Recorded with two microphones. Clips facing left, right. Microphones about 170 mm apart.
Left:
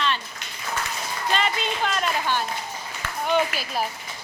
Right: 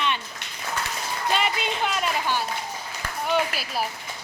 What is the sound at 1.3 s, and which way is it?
A woman's voice, 10° right (ahead or behind).